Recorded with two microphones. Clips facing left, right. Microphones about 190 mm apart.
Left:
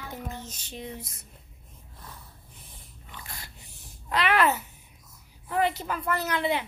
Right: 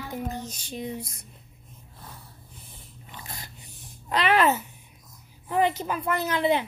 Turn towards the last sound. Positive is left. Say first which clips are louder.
# right 3 dB
turn(degrees=-20)  # may be behind; listen again after turning